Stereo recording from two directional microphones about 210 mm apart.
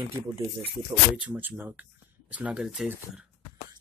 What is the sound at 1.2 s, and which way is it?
Speech, 10° right (ahead or behind).